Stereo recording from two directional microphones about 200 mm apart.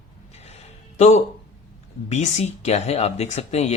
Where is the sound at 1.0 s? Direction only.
35° left (ahead or behind).